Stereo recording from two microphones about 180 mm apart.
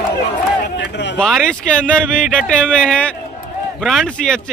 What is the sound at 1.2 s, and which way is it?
Speech, 5° left (ahead or behind).